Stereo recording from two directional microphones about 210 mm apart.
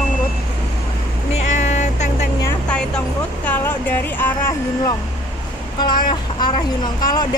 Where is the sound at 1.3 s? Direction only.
35° left (ahead or behind).